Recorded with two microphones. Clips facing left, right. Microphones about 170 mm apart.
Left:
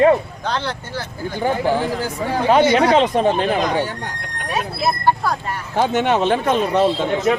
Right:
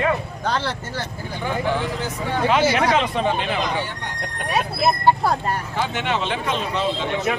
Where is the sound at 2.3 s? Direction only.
40° left (ahead or behind).